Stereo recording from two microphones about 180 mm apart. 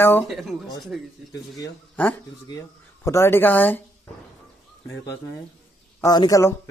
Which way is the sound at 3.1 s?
15° left (ahead or behind).